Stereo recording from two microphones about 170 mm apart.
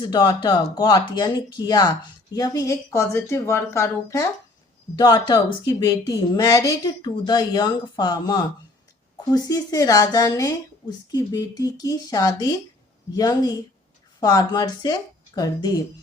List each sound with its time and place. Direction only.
0.0 s a woman's voice: 25° left (ahead or behind)